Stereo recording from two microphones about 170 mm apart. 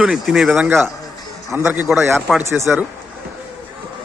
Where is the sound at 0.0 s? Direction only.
Centre (ahead or behind).